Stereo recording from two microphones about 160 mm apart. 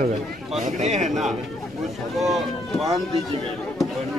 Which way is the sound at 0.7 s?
45° right (ahead or behind).